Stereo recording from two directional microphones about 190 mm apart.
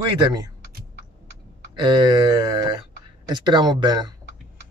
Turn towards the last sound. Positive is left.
turn(degrees=-20)  # may be behind; listen again after turning